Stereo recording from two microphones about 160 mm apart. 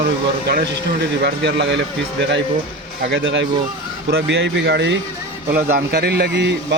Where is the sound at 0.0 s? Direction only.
70° right (ahead or behind).